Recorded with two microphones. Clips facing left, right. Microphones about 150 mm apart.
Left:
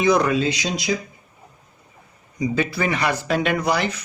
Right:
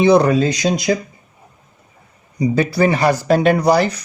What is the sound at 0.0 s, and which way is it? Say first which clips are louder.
Speech: right 6 dB; 30° right (ahead or behind).